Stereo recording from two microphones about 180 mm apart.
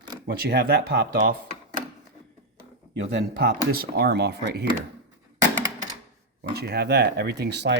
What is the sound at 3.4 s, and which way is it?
Speech, 60° right (ahead or behind).